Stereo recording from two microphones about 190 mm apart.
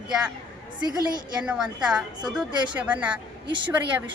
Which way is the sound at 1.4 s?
5° right (ahead or behind).